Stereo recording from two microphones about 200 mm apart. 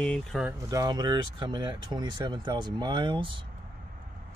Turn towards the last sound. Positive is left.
turn(degrees=-20)  # may be behind; listen again after turning